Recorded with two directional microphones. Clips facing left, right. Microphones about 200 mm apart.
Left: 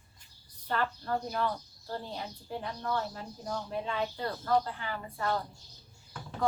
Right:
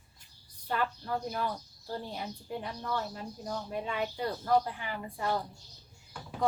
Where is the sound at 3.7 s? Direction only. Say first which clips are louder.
Even; 10° right (ahead or behind).